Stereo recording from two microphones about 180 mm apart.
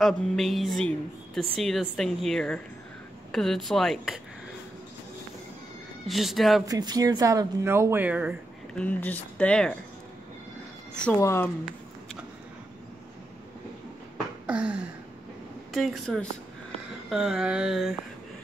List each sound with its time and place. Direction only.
0.0 s a woman's voice: centre (ahead or behind)
6.0 s a woman's voice: centre (ahead or behind)
6.7 s speech: 20° right (ahead or behind)
8.7 s speech: 10° left (ahead or behind)
11.1 s speech: 15° left (ahead or behind)
14.4 s a sound: 5° right (ahead or behind)
15.7 s a woman's voice: centre (ahead or behind)